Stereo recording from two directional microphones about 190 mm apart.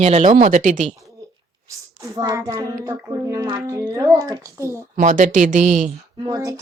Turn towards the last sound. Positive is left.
turn(degrees=-20)  # may be behind; listen again after turning